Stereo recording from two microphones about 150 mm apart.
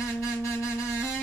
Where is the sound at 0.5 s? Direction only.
20° left (ahead or behind).